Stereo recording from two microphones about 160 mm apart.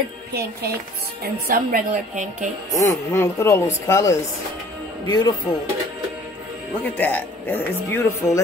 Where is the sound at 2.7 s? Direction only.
20° left (ahead or behind).